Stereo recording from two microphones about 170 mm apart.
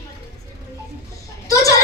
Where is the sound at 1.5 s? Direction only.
20° left (ahead or behind).